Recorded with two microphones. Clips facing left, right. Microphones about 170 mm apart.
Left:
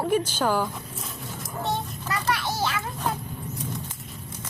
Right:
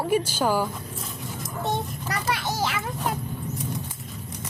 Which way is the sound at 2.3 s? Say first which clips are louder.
Even; 20° right (ahead or behind).